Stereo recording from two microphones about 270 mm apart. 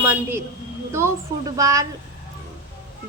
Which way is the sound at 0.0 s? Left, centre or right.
Centre.